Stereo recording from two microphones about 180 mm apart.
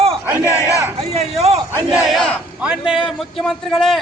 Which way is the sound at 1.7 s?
5° right (ahead or behind).